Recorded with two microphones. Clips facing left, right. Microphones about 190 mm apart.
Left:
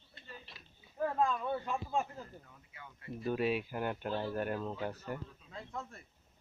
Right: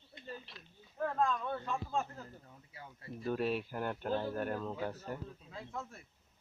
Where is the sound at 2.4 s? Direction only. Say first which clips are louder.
Right 2 dB; 35° right (ahead or behind).